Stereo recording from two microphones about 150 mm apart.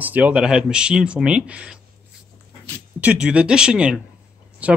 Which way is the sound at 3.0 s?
5° right (ahead or behind).